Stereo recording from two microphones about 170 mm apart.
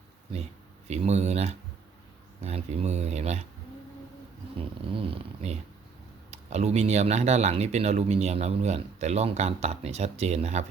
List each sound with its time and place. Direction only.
0.9 s speech: 40° right (ahead or behind)
4.9 s a sound: 35° right (ahead or behind)
6.3 s speech: 40° right (ahead or behind)